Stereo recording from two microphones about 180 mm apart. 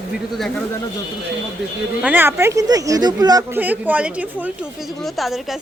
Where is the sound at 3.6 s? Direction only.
10° right (ahead or behind).